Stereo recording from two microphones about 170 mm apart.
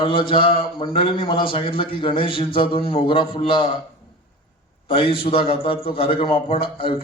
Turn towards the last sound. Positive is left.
turn(degrees=30)  # may be behind; listen again after turning